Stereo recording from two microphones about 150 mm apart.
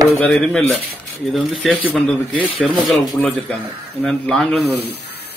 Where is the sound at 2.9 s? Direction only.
5° left (ahead or behind).